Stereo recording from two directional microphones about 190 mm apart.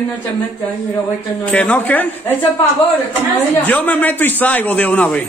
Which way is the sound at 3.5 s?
10° left (ahead or behind).